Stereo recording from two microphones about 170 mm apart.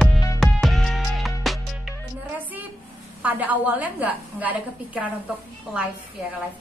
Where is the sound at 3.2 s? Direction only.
10° right (ahead or behind).